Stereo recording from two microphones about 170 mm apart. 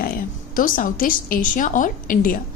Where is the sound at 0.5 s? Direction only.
55° left (ahead or behind).